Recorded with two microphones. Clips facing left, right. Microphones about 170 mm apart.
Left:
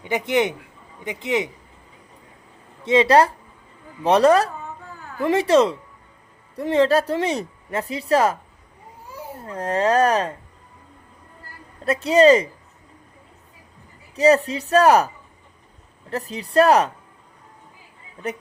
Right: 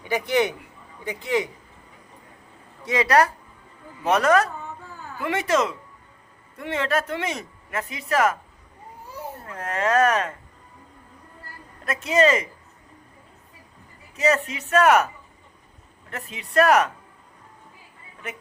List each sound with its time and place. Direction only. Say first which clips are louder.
0.0 s a man's voice: left 1 dB; 20° left (ahead or behind)
2.8 s a man's voice: left 4 dB; 25° left (ahead or behind)
9.5 s speech: left 4 dB; 30° left (ahead or behind)
11.9 s speech: left 6 dB; 35° left (ahead or behind)
14.2 s speech: left 6 dB; 35° left (ahead or behind)